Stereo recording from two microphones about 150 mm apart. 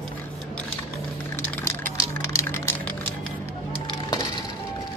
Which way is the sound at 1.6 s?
15° left (ahead or behind).